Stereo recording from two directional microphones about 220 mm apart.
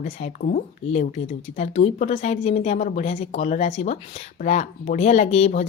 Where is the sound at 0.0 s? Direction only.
35° left (ahead or behind).